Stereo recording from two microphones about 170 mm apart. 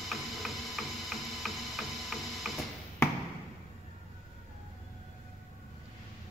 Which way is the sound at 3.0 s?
15° left (ahead or behind).